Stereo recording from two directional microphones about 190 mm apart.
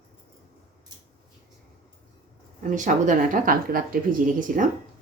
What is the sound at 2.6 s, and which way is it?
Speech, 40° right (ahead or behind).